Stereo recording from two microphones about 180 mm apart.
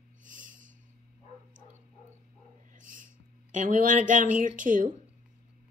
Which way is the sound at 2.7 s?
45° right (ahead or behind).